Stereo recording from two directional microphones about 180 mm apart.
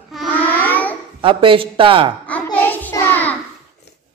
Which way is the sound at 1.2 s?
30° right (ahead or behind).